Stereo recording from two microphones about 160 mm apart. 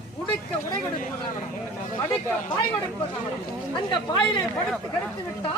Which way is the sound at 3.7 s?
30° left (ahead or behind).